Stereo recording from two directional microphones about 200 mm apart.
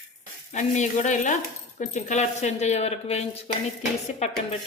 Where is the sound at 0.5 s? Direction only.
35° left (ahead or behind).